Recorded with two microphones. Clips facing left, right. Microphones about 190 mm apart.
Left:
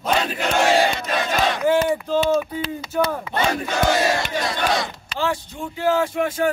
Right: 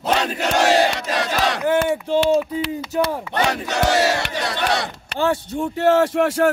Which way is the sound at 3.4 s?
70° right (ahead or behind).